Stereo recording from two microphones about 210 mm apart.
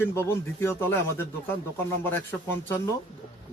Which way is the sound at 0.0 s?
10° left (ahead or behind).